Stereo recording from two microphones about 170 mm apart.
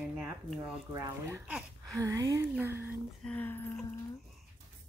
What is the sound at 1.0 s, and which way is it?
Speech, 15° right (ahead or behind).